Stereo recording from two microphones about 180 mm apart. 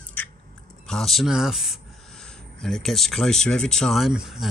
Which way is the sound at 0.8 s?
Centre (ahead or behind).